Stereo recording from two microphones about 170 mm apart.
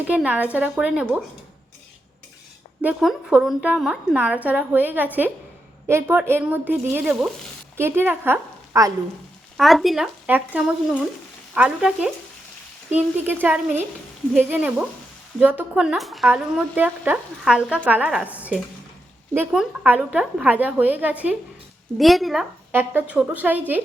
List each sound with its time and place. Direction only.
0.1 s speech: 10° right (ahead or behind)
2.8 s speech: centre (ahead or behind)
9.6 s speech: centre (ahead or behind)
22.7 s speech: 10° right (ahead or behind)